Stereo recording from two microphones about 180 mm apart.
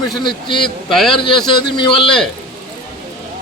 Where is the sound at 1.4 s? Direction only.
25° left (ahead or behind).